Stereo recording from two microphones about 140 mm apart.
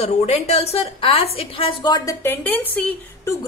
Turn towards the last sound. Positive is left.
turn(degrees=10)  # may be behind; listen again after turning